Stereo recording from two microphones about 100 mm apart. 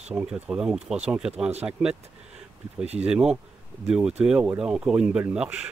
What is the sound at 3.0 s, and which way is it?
Speech, 10° right (ahead or behind).